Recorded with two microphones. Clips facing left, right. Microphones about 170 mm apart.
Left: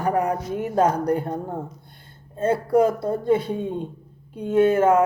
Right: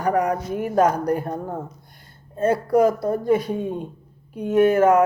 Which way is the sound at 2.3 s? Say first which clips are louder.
Right 1 dB; 30° left (ahead or behind).